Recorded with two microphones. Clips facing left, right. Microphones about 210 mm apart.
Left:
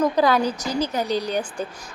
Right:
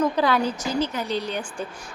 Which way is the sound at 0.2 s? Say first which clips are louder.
Left 3 dB; 40° left (ahead or behind).